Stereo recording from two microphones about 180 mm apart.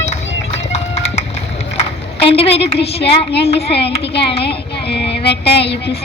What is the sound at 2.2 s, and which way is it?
Child singing, 30° left (ahead or behind).